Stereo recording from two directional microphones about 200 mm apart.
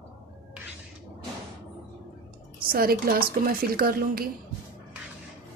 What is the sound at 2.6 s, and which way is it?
A woman's voice, 50° right (ahead or behind).